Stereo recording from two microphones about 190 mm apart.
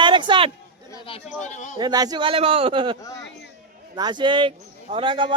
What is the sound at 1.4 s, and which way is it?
Speech, 40° left (ahead or behind).